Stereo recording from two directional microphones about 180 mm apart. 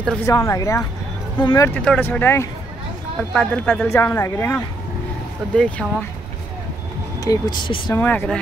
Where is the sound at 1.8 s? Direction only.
10° left (ahead or behind).